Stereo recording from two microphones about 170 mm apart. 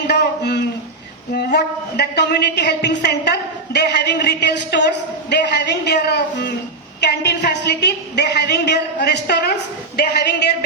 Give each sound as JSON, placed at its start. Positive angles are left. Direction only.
{"t": 0.1, "sound": "a sound", "side_deg": 80}
{"t": 1.3, "sound": "a woman's voice", "side_deg": 75}
{"t": 3.0, "sound": "a woman's voice", "side_deg": 80}